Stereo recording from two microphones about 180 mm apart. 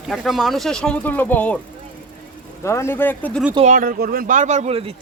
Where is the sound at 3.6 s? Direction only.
45° right (ahead or behind).